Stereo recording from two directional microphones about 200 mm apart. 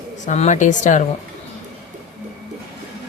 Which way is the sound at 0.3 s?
35° left (ahead or behind).